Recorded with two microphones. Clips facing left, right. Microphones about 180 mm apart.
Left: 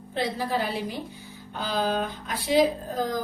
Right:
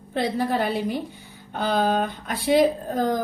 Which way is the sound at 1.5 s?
55° right (ahead or behind).